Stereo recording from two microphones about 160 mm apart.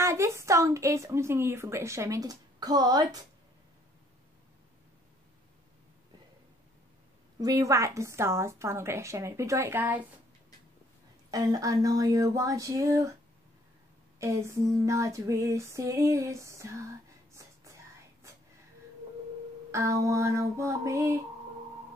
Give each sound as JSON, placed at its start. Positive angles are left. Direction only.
{"t": 0.0, "sound": "speech", "side_deg": -20}
{"t": 7.3, "sound": "a woman's voice", "side_deg": -20}
{"t": 11.2, "sound": "speech", "side_deg": -25}
{"t": 14.2, "sound": "speech", "side_deg": -20}
{"t": 19.7, "sound": "speech", "side_deg": -20}